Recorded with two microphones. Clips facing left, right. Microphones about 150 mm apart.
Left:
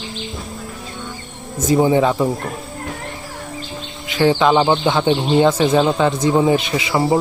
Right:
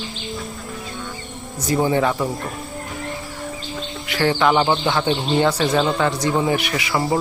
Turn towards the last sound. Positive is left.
turn(degrees=20)  # may be behind; listen again after turning